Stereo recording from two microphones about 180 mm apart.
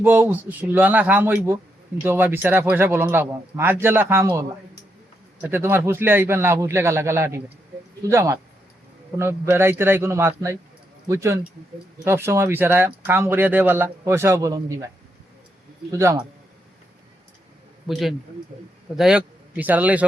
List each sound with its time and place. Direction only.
0.0 s speech: 10° right (ahead or behind)
5.4 s speech: 10° right (ahead or behind)
15.9 s speech: 15° right (ahead or behind)
18.9 s a man's voice: 5° right (ahead or behind)